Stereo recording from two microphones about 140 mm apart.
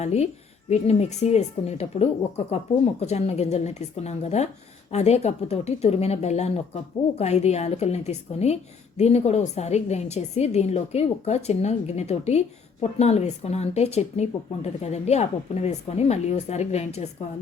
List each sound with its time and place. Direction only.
0.0 s speech: 50° left (ahead or behind)